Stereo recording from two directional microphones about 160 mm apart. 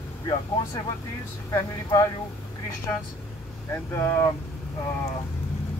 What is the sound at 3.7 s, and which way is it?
Speech, 15° left (ahead or behind).